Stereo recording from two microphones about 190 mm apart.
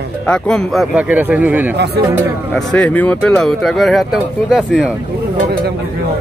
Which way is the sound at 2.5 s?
5° left (ahead or behind).